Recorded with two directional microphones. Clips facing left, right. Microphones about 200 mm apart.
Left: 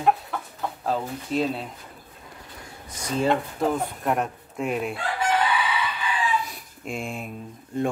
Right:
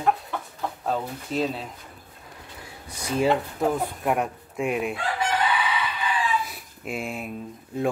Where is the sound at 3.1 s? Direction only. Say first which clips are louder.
Right 1 dB; 10° right (ahead or behind).